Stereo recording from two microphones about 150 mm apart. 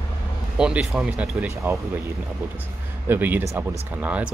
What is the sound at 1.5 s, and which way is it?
Speech, 20° right (ahead or behind).